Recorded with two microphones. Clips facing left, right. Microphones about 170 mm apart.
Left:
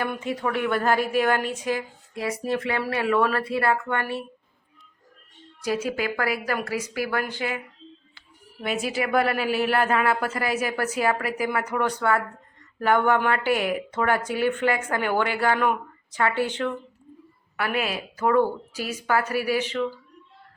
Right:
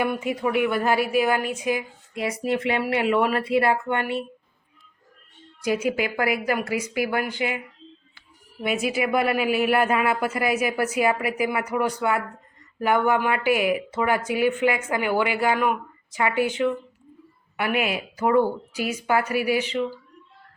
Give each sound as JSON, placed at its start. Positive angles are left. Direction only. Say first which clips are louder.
{"t": 0.0, "sound": "speech", "louder": "right 3 dB", "side_deg": -10}
{"t": 5.6, "sound": "speech", "louder": "right 2 dB", "side_deg": -15}
{"t": 8.6, "sound": "speech", "louder": "right 2 dB", "side_deg": -10}